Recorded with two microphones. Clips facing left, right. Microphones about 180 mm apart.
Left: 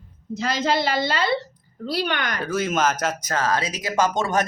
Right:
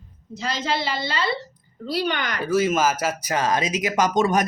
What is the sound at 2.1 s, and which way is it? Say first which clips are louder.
Speech: right 1 dB; 60° left (ahead or behind).